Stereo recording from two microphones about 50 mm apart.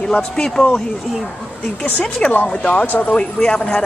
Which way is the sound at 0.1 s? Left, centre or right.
Centre.